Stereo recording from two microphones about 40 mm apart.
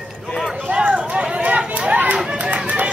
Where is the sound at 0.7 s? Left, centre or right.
Right.